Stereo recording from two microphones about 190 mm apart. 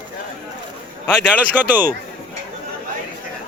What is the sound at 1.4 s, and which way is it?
Speech, 10° right (ahead or behind).